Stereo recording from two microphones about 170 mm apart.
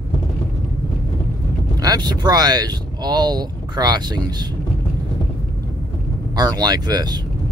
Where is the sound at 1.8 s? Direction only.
25° right (ahead or behind).